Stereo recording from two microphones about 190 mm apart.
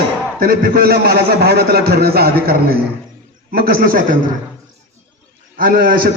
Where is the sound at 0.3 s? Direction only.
50° right (ahead or behind).